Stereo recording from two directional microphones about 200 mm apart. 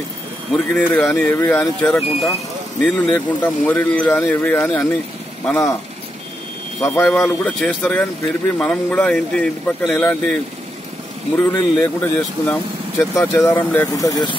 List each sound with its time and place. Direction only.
0.7 s speech: 5° left (ahead or behind)
7.0 s speech: 5° left (ahead or behind)
11.3 s speech: 10° left (ahead or behind)